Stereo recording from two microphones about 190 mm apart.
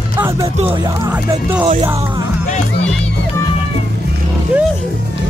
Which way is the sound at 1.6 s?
30° right (ahead or behind).